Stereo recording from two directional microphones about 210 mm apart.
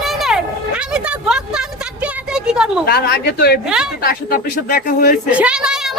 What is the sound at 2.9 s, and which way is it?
Speech, 50° left (ahead or behind).